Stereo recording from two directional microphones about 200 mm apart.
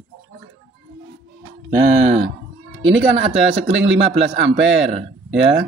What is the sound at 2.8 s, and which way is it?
Speech, 65° right (ahead or behind).